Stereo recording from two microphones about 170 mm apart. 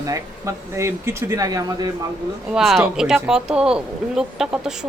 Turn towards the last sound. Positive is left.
turn(degrees=-5)  # may be behind; listen again after turning